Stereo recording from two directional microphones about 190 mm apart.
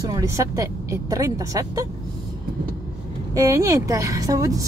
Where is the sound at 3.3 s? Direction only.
15° right (ahead or behind).